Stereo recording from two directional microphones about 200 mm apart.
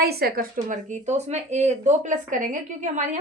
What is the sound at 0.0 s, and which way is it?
Speech, 50° right (ahead or behind).